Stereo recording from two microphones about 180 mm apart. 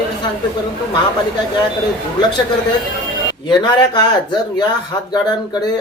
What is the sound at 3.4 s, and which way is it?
Speech, 25° left (ahead or behind).